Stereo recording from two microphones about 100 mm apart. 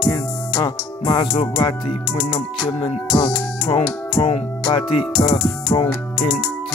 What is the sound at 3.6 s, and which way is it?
Music, 70° left (ahead or behind).